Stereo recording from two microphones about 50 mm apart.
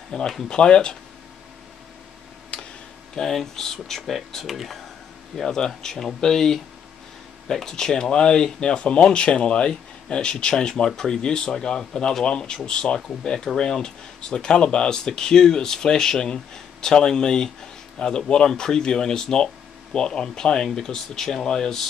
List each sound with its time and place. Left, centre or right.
0.1 s speech: centre
2.5 s a sound: left
3.2 s speech: centre